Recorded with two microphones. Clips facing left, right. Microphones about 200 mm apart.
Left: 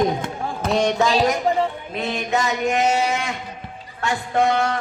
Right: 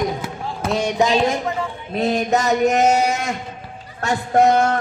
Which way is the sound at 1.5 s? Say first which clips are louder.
Left 4 dB; 30° left (ahead or behind).